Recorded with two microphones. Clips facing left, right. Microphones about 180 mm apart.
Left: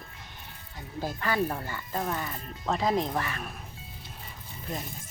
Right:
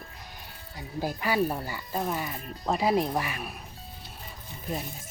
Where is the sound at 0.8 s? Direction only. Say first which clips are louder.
Right 2 dB; 10° right (ahead or behind).